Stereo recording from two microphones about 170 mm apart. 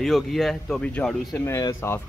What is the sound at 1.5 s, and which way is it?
Speech, 20° left (ahead or behind).